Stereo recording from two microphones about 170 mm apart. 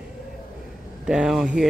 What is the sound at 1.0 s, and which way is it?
Speech, 5° right (ahead or behind).